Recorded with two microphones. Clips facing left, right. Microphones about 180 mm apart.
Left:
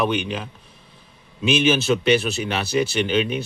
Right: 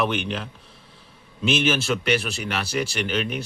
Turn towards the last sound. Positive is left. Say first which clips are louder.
# left 5 dB
turn(degrees=20)  # may be behind; listen again after turning